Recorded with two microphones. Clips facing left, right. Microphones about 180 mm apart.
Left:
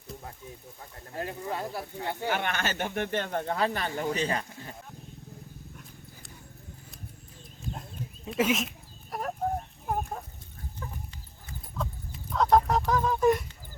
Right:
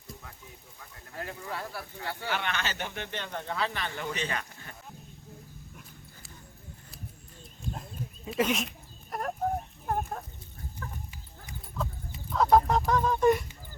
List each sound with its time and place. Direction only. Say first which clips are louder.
1.2 s speech: left 4 dB; 20° left (ahead or behind)
2.3 s speech: left 1 dB; 50° left (ahead or behind); by 4.7 s 35° left (ahead or behind)
7.6 s goat: even; centre (ahead or behind)
11.8 s dog: even; centre (ahead or behind)
12.3 s fowl: even; centre (ahead or behind)